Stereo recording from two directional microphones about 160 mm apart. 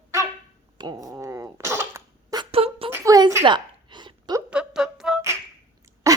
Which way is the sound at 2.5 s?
35° right (ahead or behind).